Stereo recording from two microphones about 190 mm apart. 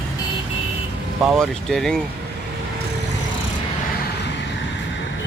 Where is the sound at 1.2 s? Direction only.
Centre (ahead or behind).